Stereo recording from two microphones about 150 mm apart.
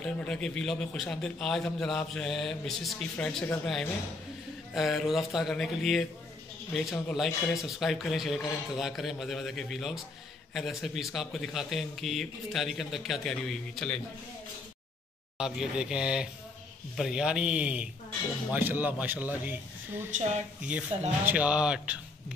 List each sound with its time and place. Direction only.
0.0 s a man's voice: 5° left (ahead or behind)
15.3 s a man's voice: 5° right (ahead or behind)
20.9 s speech: 40° right (ahead or behind)
21.3 s a man's voice: 10° right (ahead or behind)